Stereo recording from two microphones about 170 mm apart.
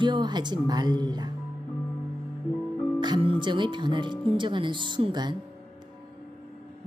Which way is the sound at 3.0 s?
25° right (ahead or behind).